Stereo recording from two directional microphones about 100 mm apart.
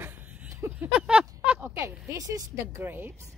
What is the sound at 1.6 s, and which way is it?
A woman's voice, 25° right (ahead or behind).